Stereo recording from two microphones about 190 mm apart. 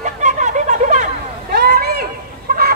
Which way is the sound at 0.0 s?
40° right (ahead or behind).